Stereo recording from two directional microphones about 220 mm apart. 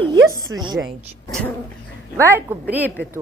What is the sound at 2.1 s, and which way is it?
Speech, 15° right (ahead or behind).